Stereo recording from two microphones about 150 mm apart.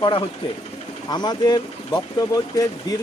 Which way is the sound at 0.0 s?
35° left (ahead or behind).